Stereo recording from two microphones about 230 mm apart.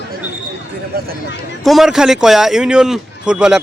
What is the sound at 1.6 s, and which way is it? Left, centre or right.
Speech, centre.